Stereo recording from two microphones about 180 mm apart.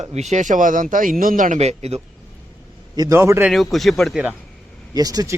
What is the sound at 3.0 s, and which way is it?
Speech, 15° right (ahead or behind).